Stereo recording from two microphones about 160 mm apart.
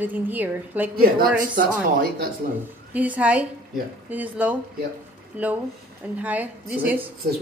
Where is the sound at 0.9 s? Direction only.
65° right (ahead or behind).